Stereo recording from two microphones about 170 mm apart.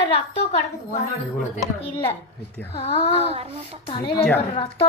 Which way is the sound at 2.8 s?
35° left (ahead or behind).